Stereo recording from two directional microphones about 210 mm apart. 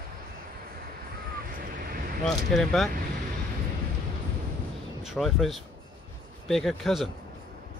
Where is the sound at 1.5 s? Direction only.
40° right (ahead or behind).